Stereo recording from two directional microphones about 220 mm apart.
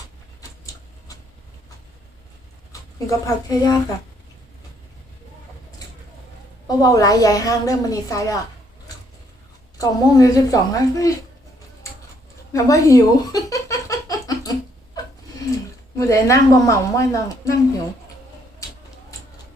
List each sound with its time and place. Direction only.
3.1 s a woman's voice: 15° left (ahead or behind)
6.7 s a woman's voice: 15° left (ahead or behind)
9.7 s a woman's voice: 15° left (ahead or behind)
12.5 s a sound: 15° left (ahead or behind)
16.0 s a woman's voice: 15° left (ahead or behind)